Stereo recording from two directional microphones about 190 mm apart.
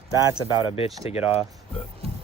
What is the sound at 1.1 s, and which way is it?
Speech, 30° left (ahead or behind).